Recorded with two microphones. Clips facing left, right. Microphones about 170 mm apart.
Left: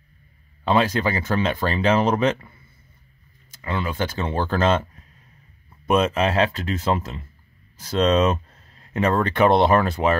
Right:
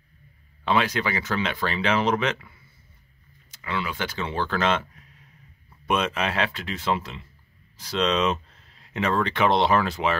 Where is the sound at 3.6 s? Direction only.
45° left (ahead or behind).